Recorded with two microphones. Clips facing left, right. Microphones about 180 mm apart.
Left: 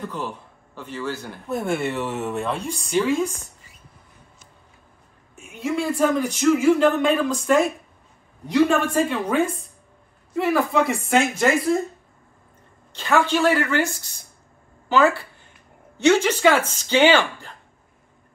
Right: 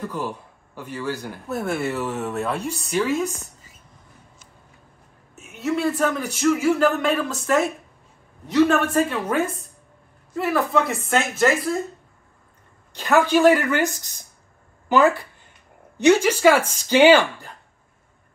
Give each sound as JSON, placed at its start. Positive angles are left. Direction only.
{"t": 0.7, "sound": "speech", "side_deg": -10}
{"t": 5.3, "sound": "speech", "side_deg": -5}
{"t": 13.2, "sound": "speech", "side_deg": -15}